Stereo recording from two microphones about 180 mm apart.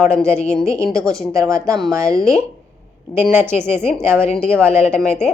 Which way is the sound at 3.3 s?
10° right (ahead or behind).